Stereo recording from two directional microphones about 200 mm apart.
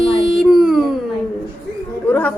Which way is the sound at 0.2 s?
Centre (ahead or behind).